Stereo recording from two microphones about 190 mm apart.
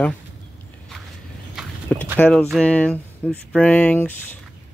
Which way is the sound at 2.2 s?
5° left (ahead or behind).